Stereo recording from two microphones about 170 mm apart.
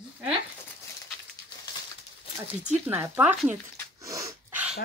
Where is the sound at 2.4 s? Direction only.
15° right (ahead or behind).